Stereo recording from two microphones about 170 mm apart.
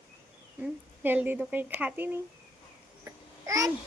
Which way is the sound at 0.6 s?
10° right (ahead or behind).